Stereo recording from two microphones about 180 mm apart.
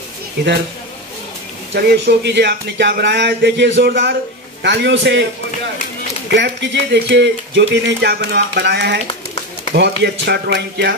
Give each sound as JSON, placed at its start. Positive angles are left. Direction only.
{"t": 0.4, "sound": "speech", "side_deg": -70}
{"t": 1.7, "sound": "speech", "side_deg": -65}
{"t": 4.6, "sound": "a man's voice", "side_deg": -80}
{"t": 6.3, "sound": "speech", "side_deg": -75}